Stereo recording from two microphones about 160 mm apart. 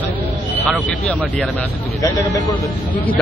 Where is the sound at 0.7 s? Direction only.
5° left (ahead or behind).